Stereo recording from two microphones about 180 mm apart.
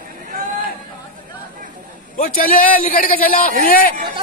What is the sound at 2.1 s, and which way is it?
A man's voice, 50° left (ahead or behind).